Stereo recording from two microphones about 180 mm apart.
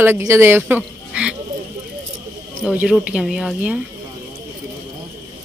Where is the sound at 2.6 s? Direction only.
5° right (ahead or behind).